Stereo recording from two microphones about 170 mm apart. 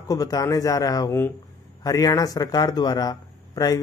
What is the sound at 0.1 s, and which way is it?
A man's voice, 20° left (ahead or behind).